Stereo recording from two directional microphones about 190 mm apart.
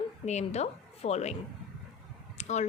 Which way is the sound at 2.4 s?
40° left (ahead or behind).